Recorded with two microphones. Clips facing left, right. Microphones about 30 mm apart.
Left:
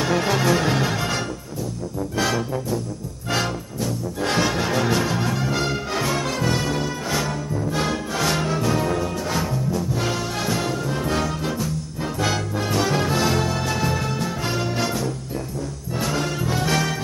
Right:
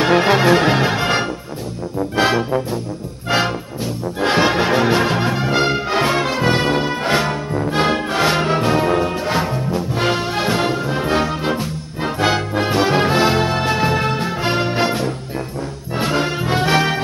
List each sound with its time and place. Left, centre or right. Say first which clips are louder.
0.0 s music: right 7 dB; right